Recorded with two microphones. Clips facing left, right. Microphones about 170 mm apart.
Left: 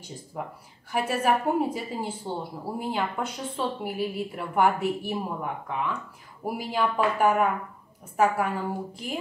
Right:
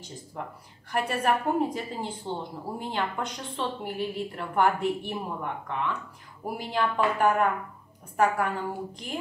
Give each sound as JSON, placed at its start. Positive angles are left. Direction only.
{"t": 0.3, "sound": "a woman's voice", "side_deg": 5}